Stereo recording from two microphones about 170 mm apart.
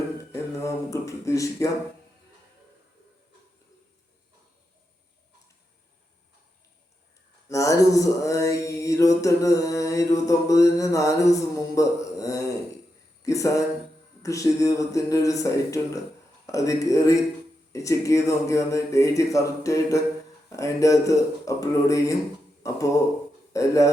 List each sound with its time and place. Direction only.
0.6 s speech: 20° left (ahead or behind)
7.4 s mantra: 20° left (ahead or behind)
22.6 s speech: 20° left (ahead or behind)